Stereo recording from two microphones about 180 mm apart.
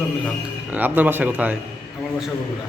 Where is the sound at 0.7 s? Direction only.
10° right (ahead or behind).